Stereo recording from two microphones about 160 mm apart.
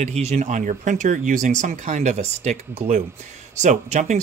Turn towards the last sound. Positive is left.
turn(degrees=-50)  # may be behind; listen again after turning